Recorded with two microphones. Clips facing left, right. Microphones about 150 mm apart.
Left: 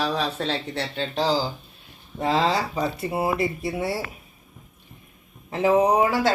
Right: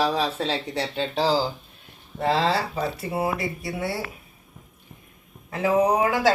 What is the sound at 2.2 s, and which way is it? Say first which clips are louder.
Speech: even; 15° left (ahead or behind).